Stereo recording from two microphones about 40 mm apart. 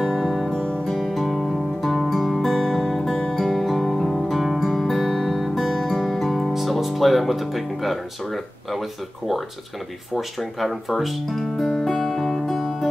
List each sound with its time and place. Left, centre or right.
0.2 s music: centre
0.6 s music: left
0.9 s music: centre
10.1 s guitar: centre